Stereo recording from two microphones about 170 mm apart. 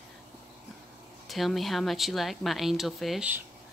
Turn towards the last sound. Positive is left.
turn(degrees=0)  # may be behind; listen again after turning